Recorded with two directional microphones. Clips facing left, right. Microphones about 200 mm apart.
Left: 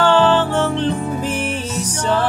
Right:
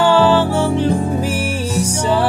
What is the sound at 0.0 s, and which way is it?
Music, 10° right (ahead or behind).